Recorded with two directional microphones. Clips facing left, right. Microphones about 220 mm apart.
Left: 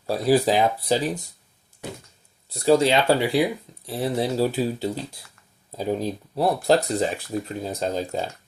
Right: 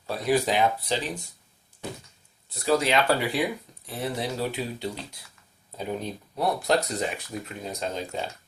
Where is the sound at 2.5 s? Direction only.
30° left (ahead or behind).